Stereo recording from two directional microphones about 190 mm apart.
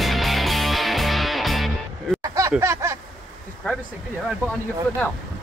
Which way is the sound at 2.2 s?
15° right (ahead or behind).